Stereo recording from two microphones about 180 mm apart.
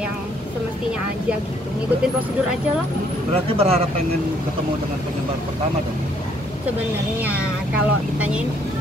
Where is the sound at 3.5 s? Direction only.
35° right (ahead or behind).